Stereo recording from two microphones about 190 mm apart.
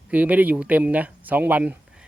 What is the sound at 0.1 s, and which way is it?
Speech, 10° right (ahead or behind).